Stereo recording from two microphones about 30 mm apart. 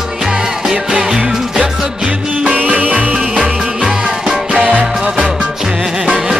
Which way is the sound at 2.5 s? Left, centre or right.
Right.